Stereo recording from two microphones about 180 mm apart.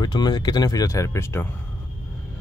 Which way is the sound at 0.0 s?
25° left (ahead or behind).